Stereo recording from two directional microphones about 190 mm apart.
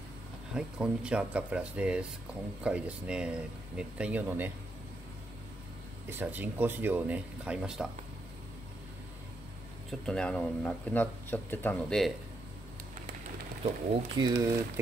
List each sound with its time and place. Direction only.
0.6 s speech: 5° right (ahead or behind)
6.0 s speech: 10° right (ahead or behind)
9.8 s speech: 5° left (ahead or behind)
14.1 s speech: 20° right (ahead or behind)